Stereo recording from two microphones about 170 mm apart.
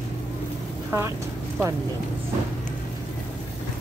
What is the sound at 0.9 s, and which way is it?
Speech, 15° right (ahead or behind).